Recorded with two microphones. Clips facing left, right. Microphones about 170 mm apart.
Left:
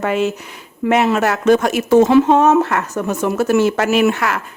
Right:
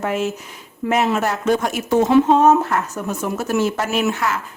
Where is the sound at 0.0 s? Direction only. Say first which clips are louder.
Left 4 dB; 75° left (ahead or behind).